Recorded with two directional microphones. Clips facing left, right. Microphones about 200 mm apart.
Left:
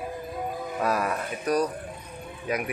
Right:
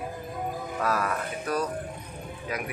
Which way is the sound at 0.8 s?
20° left (ahead or behind).